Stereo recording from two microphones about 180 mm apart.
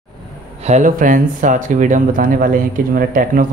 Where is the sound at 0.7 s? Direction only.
45° right (ahead or behind).